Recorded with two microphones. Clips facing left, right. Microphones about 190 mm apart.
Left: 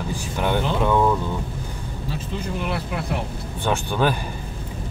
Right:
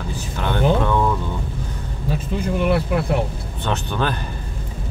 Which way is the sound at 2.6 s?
55° right (ahead or behind).